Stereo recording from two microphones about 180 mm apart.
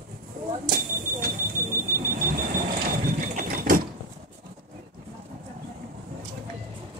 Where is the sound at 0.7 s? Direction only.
50° right (ahead or behind).